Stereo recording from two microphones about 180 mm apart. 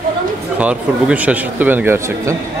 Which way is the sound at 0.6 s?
5° right (ahead or behind).